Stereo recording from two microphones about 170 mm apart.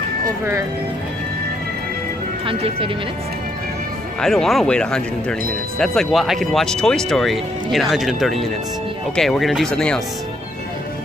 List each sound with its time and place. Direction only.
2.4 s speech: 30° right (ahead or behind)
4.2 s speech: centre (ahead or behind)